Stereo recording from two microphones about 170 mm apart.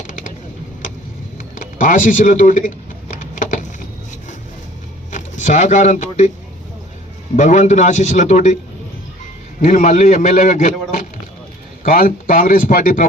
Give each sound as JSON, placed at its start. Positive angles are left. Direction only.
{"t": 0.0, "sound": "a sound", "side_deg": 50}
{"t": 1.5, "sound": "a sound", "side_deg": 50}
{"t": 5.1, "sound": "speech", "side_deg": 45}
{"t": 7.3, "sound": "a man's voice", "side_deg": 45}
{"t": 9.6, "sound": "a man's voice", "side_deg": 45}
{"t": 11.8, "sound": "a man's voice", "side_deg": 55}